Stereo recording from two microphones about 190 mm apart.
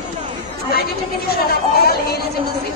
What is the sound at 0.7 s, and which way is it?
A woman's voice, 55° left (ahead or behind).